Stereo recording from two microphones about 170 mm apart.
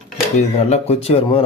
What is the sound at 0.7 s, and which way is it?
Speech, 35° left (ahead or behind).